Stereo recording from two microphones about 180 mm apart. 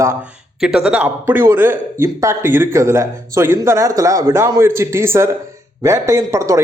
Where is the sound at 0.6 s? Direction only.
5° right (ahead or behind).